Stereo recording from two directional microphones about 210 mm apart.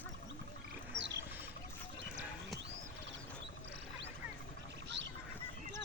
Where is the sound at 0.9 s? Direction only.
60° right (ahead or behind).